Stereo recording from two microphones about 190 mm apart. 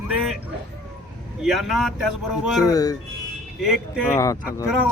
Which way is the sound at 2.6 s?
20° left (ahead or behind).